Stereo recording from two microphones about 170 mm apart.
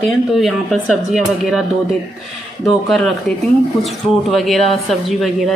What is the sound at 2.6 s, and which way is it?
Speech, centre (ahead or behind).